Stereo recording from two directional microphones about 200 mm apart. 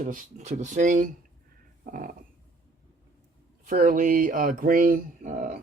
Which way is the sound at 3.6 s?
45° right (ahead or behind).